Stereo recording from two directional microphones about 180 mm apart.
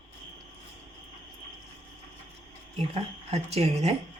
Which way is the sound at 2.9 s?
35° right (ahead or behind).